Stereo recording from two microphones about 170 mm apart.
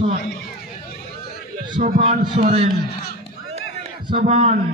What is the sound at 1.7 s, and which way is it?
Speech, 40° right (ahead or behind).